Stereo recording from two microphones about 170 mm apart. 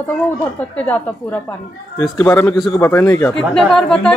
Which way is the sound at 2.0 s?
15° left (ahead or behind).